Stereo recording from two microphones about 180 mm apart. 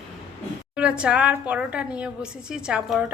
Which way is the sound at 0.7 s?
5° right (ahead or behind).